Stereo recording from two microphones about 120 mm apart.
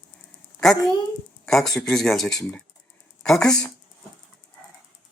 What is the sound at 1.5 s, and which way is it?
Mantra, 5° left (ahead or behind).